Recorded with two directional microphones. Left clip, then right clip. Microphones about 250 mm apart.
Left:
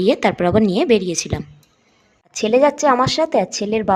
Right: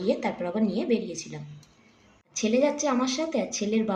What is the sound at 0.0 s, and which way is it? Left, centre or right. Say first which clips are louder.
Speech: left 12 dB; left.